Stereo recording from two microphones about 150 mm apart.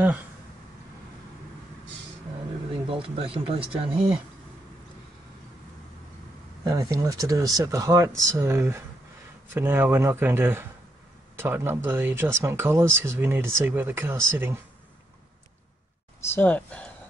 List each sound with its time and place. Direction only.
2.9 s speech: 35° right (ahead or behind)
6.6 s speech: 25° right (ahead or behind)
16.2 s speech: 15° left (ahead or behind)